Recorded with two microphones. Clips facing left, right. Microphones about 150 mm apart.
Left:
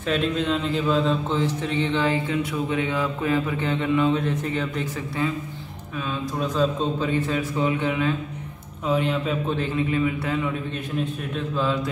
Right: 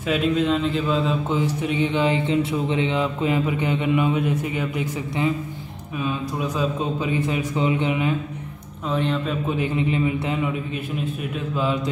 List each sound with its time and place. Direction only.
0.0 s a man's voice: 5° right (ahead or behind)
8.8 s speech: 5° left (ahead or behind)
9.5 s a man's voice: 15° right (ahead or behind)